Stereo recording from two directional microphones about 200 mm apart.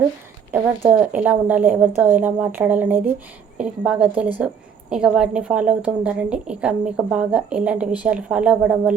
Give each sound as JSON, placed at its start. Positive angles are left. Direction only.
{"t": 0.5, "sound": "a woman's voice", "side_deg": -10}